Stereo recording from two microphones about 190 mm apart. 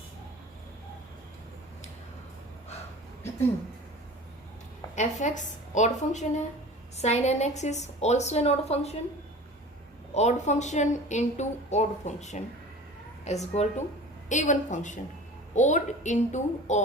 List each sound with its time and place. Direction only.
4.9 s a woman's voice: 40° left (ahead or behind)
10.2 s a woman's voice: 35° left (ahead or behind)